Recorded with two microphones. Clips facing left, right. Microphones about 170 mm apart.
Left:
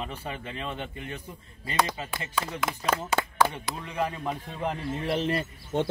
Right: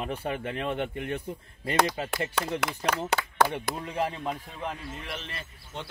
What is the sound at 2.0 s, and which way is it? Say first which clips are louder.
Speech: right 2 dB; 65° right (ahead or behind).